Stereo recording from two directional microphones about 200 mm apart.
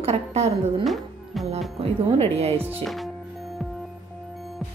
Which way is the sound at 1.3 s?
Centre (ahead or behind).